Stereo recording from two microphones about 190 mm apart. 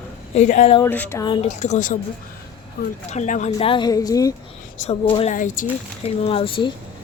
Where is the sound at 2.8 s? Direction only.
55° left (ahead or behind).